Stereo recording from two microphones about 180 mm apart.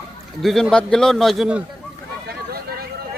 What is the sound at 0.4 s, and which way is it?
A man's voice, centre (ahead or behind).